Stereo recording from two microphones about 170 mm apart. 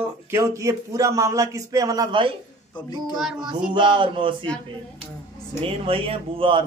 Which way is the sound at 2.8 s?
25° left (ahead or behind).